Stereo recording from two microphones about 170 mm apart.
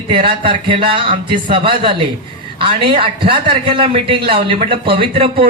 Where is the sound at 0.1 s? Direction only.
30° right (ahead or behind).